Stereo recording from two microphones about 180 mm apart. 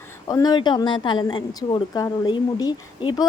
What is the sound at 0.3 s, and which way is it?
A woman's voice, 20° left (ahead or behind).